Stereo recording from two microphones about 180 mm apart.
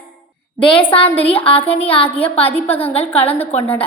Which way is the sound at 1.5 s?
10° left (ahead or behind).